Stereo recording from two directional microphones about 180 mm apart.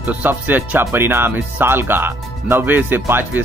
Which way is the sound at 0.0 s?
10° right (ahead or behind).